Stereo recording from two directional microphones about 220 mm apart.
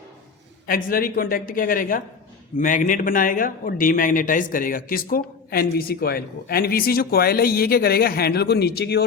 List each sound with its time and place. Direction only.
0.7 s a woman's voice: 40° left (ahead or behind)